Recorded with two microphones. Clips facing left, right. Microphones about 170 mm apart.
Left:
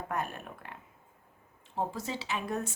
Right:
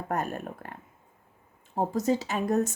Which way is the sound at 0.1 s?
45° right (ahead or behind).